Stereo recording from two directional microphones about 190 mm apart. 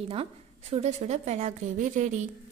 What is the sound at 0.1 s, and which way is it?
A woman's voice, 30° right (ahead or behind).